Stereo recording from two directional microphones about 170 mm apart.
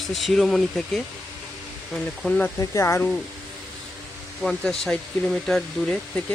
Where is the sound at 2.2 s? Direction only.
5° left (ahead or behind).